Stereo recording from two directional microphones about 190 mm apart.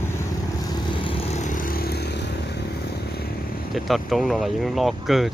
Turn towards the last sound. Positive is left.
turn(degrees=0)  # may be behind; listen again after turning